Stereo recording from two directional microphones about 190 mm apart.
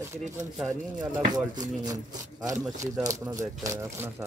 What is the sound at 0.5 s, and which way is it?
Speech, centre (ahead or behind).